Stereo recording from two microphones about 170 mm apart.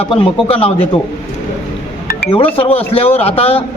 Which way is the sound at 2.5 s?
35° left (ahead or behind).